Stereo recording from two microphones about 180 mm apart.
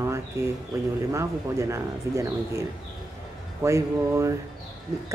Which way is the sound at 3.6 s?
15° right (ahead or behind).